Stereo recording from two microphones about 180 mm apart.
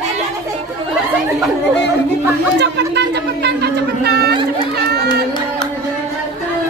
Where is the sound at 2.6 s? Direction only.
70° right (ahead or behind).